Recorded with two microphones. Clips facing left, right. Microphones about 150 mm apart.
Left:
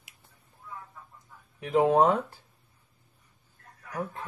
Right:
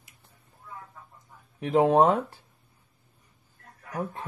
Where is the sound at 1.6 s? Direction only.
30° right (ahead or behind).